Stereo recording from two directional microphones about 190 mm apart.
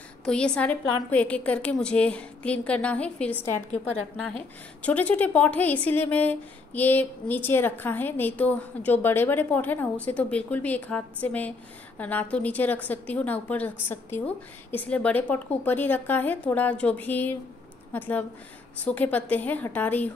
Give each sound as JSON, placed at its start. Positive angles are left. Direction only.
{"t": 0.2, "sound": "a woman's voice", "side_deg": 5}